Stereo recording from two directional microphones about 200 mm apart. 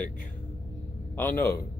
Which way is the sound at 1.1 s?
10° left (ahead or behind).